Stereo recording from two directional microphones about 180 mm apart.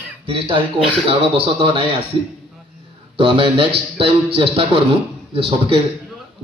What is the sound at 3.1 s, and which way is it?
A man's voice, 30° right (ahead or behind).